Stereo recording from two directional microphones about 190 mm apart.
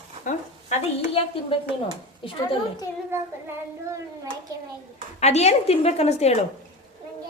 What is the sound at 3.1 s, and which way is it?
Child singing, 10° right (ahead or behind).